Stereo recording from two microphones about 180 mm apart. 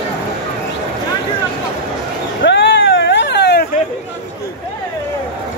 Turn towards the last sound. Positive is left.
turn(degrees=65)  # may be behind; listen again after turning